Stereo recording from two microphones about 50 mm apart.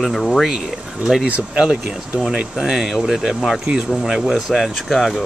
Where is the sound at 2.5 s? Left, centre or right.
Centre.